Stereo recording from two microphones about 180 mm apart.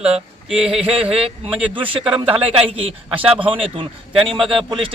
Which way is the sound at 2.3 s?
30° right (ahead or behind).